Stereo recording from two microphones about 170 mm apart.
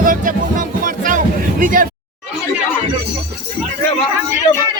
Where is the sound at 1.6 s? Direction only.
55° right (ahead or behind).